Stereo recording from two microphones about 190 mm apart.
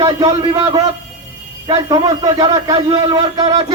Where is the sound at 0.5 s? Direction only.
25° right (ahead or behind).